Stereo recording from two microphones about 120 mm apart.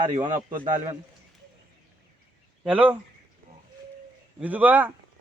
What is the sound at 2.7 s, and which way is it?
Speech, 15° right (ahead or behind).